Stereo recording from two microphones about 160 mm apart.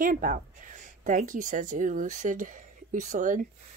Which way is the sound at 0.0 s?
60° right (ahead or behind).